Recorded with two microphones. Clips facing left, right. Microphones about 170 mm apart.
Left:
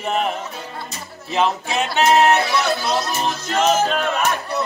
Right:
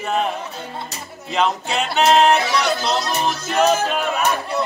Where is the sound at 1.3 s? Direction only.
Centre (ahead or behind).